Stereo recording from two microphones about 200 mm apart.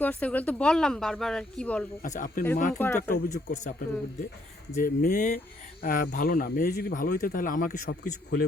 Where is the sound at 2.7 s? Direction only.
10° left (ahead or behind).